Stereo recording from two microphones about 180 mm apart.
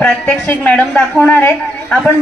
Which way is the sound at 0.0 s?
10° left (ahead or behind).